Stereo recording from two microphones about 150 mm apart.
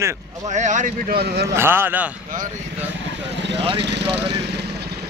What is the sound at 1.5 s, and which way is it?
Speech, 15° right (ahead or behind).